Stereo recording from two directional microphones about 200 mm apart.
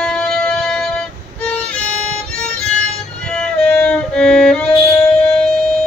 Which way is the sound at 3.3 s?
5° left (ahead or behind).